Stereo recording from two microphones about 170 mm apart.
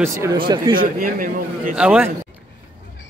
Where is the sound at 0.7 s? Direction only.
55° right (ahead or behind).